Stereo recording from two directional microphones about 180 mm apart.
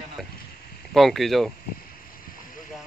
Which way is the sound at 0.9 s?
Centre (ahead or behind).